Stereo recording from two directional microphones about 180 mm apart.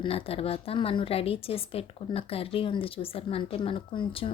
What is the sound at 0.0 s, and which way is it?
A woman's voice, 30° left (ahead or behind).